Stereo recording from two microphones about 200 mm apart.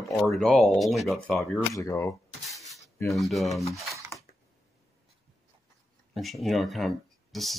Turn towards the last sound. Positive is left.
turn(degrees=0)  # may be behind; listen again after turning